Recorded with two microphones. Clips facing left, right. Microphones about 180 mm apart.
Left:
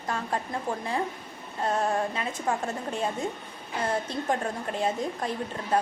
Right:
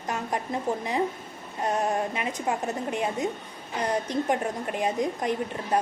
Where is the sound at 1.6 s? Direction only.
15° right (ahead or behind).